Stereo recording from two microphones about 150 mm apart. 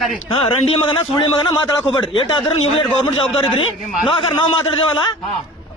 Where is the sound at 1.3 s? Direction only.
30° left (ahead or behind).